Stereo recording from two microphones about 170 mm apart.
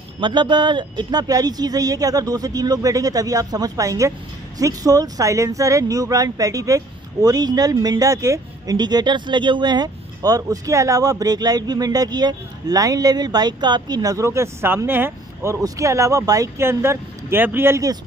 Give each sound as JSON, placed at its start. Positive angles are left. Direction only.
{"t": 0.2, "sound": "speech", "side_deg": -25}